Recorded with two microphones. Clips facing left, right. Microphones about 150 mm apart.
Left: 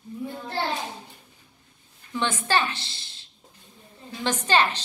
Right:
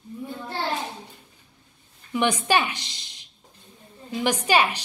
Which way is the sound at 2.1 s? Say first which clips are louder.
Right 3 dB; 15° right (ahead or behind).